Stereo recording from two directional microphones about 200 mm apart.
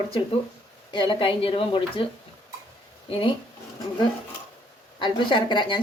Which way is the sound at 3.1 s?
25° left (ahead or behind).